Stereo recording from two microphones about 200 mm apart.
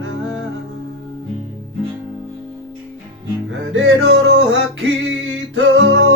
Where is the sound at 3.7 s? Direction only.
85° right.